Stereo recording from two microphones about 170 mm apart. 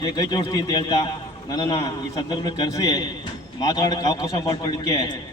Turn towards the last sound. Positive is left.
turn(degrees=25)  # may be behind; listen again after turning